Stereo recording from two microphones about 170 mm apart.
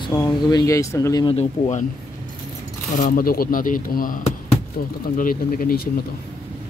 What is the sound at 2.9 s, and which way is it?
Speech, 55° left (ahead or behind).